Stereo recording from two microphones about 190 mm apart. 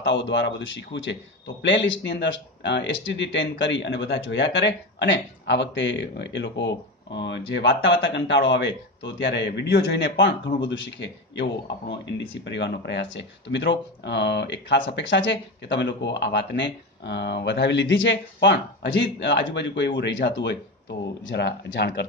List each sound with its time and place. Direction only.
0.0 s speech: 70° left (ahead or behind)